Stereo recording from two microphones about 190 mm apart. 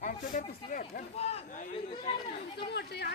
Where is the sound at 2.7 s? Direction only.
55° left (ahead or behind).